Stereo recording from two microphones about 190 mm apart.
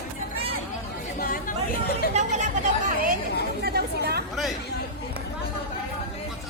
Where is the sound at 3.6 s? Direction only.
55° right (ahead or behind).